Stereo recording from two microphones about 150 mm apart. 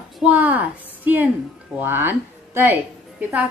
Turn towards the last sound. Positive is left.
turn(degrees=-10)  # may be behind; listen again after turning